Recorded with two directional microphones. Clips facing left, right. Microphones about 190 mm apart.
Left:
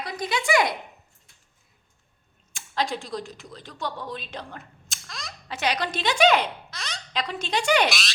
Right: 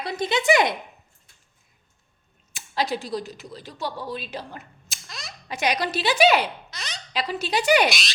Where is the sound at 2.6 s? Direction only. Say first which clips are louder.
Right 2 dB; 5° right (ahead or behind).